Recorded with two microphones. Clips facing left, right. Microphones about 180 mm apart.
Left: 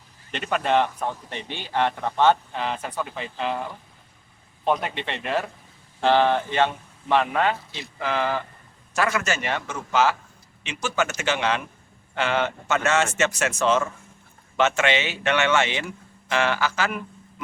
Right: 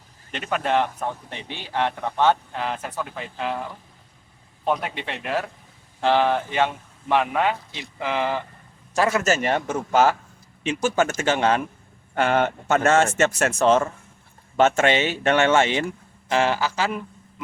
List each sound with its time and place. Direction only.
0.3 s a man's voice: 5° right (ahead or behind)
4.6 s a man's voice: 5° right (ahead or behind); by 8.4 s 20° right (ahead or behind)
8.9 s speech: 35° right (ahead or behind)